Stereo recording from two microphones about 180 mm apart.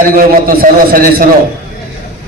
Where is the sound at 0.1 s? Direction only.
55° right (ahead or behind).